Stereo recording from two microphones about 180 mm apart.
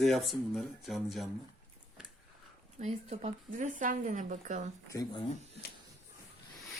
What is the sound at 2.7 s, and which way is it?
Speech, 40° right (ahead or behind).